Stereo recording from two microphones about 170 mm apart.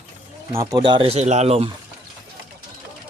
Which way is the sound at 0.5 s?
20° right (ahead or behind).